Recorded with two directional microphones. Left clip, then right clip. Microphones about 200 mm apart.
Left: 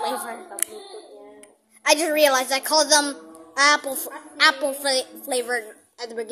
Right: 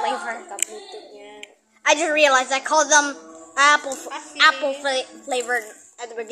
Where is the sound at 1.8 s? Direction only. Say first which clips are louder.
Right 1 dB; 25° left (ahead or behind).